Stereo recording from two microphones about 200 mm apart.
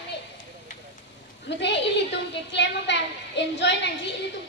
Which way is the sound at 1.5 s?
60° left (ahead or behind).